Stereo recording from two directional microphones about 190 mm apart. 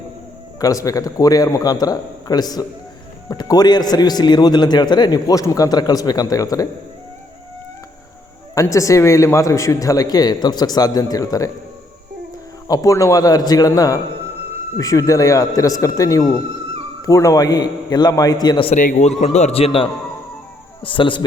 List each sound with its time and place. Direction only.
0.6 s a man's voice: 20° left (ahead or behind)
8.5 s a man's voice: 15° left (ahead or behind)
12.6 s a man's voice: 20° left (ahead or behind)
18.8 s a man's voice: 40° left (ahead or behind)